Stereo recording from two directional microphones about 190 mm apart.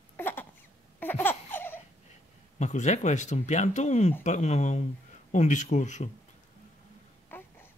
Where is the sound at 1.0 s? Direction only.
10° left (ahead or behind).